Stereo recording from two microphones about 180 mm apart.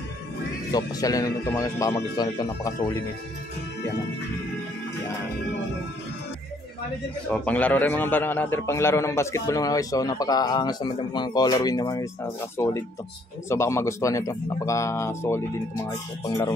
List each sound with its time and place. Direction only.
0.7 s a man's voice: 20° left (ahead or behind)
7.2 s a man's voice: 10° left (ahead or behind)